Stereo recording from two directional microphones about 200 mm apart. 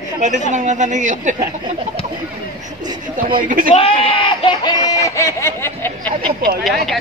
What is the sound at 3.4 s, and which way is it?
Speech, 45° right (ahead or behind).